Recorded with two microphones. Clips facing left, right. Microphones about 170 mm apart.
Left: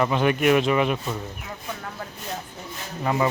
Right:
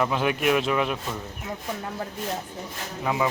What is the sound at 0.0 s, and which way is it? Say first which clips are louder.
Speech: left 3 dB; centre (ahead or behind).